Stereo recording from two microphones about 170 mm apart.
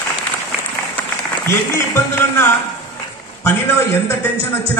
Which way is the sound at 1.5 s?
15° left (ahead or behind).